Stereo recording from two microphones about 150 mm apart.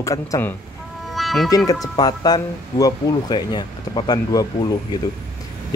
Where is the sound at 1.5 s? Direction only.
25° left (ahead or behind).